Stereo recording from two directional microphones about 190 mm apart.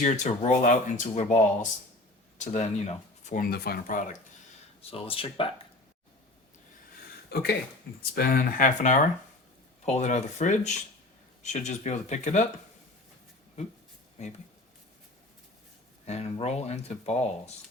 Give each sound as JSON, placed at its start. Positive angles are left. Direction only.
{"t": 0.0, "sound": "speech", "side_deg": 40}
{"t": 4.8, "sound": "speech", "side_deg": 30}
{"t": 7.3, "sound": "speech", "side_deg": 60}
{"t": 16.0, "sound": "speech", "side_deg": 35}